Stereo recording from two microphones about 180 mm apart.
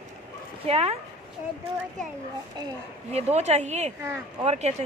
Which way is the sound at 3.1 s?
35° right (ahead or behind).